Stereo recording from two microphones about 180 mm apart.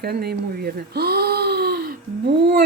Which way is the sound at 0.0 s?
60° right (ahead or behind).